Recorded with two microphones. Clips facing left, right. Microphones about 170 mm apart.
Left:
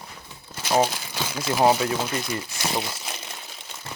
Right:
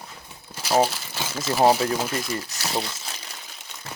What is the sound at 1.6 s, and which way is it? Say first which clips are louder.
Speech: right 1 dB; centre (ahead or behind).